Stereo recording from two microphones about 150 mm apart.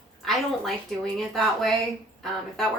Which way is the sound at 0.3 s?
Centre (ahead or behind).